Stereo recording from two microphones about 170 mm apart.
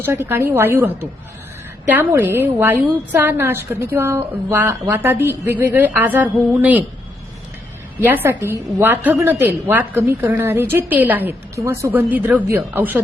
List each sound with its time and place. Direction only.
0.0 s a woman's voice: 15° right (ahead or behind)
7.9 s a woman's voice: 10° right (ahead or behind)